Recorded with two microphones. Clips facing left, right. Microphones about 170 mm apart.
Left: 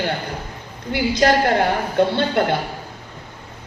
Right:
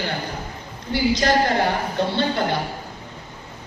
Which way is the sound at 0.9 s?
55° left (ahead or behind).